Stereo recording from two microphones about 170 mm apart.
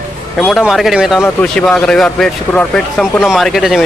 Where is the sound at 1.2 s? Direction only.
10° left (ahead or behind).